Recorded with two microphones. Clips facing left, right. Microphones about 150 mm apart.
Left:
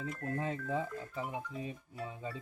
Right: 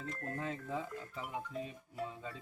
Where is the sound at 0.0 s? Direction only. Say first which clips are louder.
Left 4 dB; 10° left (ahead or behind).